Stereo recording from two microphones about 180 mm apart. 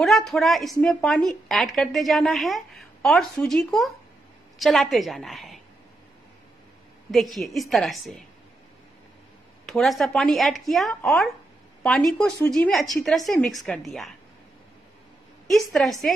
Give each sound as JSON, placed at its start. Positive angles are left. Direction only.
{"t": 0.0, "sound": "a woman's voice", "side_deg": 0}
{"t": 7.3, "sound": "a woman's voice", "side_deg": 0}
{"t": 9.7, "sound": "a woman's voice", "side_deg": 0}
{"t": 15.4, "sound": "a woman's voice", "side_deg": 0}